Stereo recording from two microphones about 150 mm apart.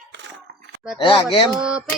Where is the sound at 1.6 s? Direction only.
5° right (ahead or behind).